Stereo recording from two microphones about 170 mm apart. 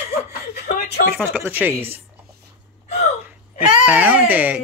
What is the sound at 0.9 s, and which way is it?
Speech, 70° left (ahead or behind).